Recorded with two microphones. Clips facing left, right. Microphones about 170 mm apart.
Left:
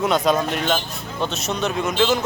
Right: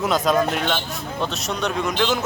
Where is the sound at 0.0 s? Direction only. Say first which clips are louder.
Even; centre (ahead or behind).